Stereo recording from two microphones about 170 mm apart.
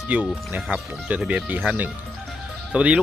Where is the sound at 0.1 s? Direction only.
10° right (ahead or behind).